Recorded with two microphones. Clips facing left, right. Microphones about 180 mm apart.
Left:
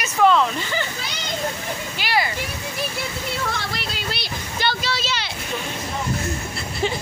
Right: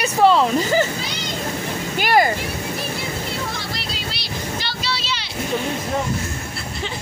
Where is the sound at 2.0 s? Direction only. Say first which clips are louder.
Right 7 dB; 50° right (ahead or behind).